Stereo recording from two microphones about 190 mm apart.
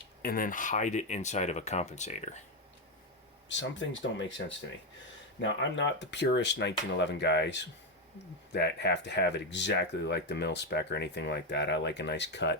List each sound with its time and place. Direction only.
0.2 s speech: 50° left (ahead or behind)
3.5 s speech: 75° left (ahead or behind)
5.4 s speech: 75° left (ahead or behind)